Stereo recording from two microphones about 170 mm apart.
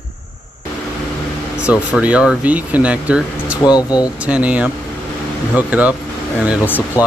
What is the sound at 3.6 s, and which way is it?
Speech, 25° left (ahead or behind).